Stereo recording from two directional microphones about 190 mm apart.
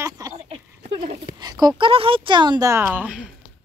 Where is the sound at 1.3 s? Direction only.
20° right (ahead or behind).